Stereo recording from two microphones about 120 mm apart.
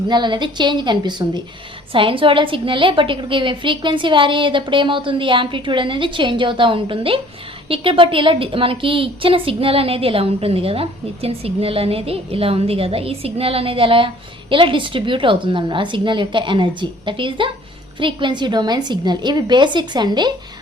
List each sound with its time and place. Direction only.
0.1 s a woman's voice: 40° right (ahead or behind)